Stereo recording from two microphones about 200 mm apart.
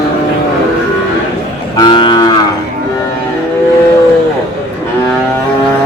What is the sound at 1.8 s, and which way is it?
Moo, 20° left (ahead or behind).